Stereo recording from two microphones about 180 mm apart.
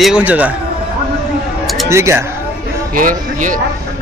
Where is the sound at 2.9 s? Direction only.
50° right (ahead or behind).